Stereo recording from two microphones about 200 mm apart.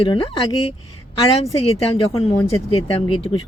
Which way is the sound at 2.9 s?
30° left (ahead or behind).